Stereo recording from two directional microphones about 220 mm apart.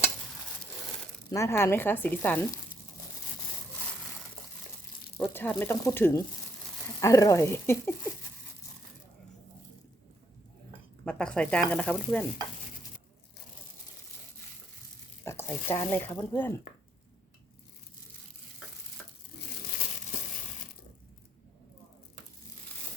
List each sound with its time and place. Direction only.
1.3 s speech: 15° left (ahead or behind)
5.3 s speech: 10° left (ahead or behind)
11.0 s speech: 5° left (ahead or behind)
15.2 s a sound: 10° left (ahead or behind)
15.6 s speech: 25° left (ahead or behind)
15.9 s speech: 10° left (ahead or behind)